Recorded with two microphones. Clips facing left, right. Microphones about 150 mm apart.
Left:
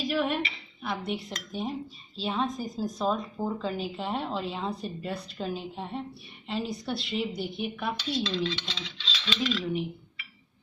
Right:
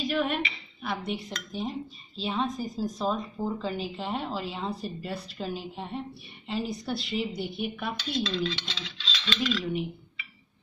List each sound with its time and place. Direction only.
0.0 s speech: centre (ahead or behind)